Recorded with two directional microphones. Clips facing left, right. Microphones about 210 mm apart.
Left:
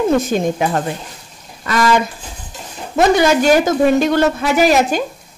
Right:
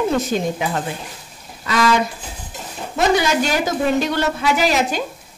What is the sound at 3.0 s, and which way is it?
Speech, 50° left (ahead or behind).